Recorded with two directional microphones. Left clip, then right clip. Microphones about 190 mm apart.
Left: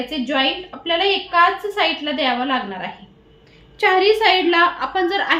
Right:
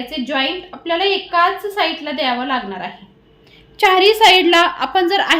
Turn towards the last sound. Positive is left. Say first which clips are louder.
# right 4 dB
turn(degrees=-50)  # may be behind; listen again after turning